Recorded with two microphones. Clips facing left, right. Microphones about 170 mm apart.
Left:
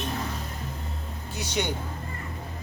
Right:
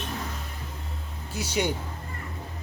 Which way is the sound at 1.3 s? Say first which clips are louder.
Right 2 dB; 5° right (ahead or behind).